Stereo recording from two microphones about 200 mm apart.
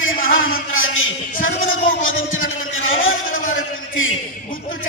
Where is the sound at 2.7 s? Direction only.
80° left.